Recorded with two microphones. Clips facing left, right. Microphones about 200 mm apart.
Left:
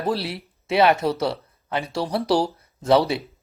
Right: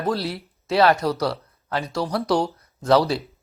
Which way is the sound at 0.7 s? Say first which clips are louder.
Even; 20° left (ahead or behind).